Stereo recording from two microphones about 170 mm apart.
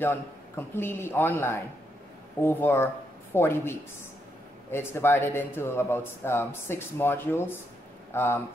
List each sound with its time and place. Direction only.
0.0 s speech: 10° left (ahead or behind)